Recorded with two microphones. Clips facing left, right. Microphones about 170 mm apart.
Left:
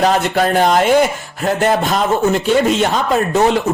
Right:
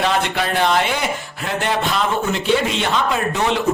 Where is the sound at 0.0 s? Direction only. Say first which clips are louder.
Left 6 dB; 40° left (ahead or behind).